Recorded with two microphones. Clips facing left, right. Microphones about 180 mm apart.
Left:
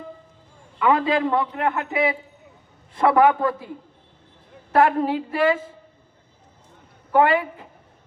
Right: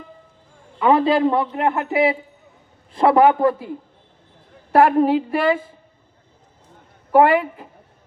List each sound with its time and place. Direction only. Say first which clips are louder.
0.8 s speech: right 4 dB; 30° right (ahead or behind)
4.7 s speech: right 4 dB; 15° right (ahead or behind)
7.1 s speech: right 4 dB; 20° right (ahead or behind)